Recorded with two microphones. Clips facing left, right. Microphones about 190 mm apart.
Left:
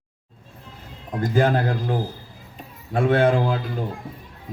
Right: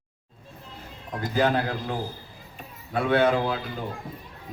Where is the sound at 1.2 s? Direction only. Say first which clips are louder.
Left 4 dB; 50° left (ahead or behind).